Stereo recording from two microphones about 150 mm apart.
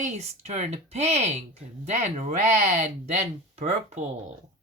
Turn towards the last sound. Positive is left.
turn(degrees=-45)  # may be behind; listen again after turning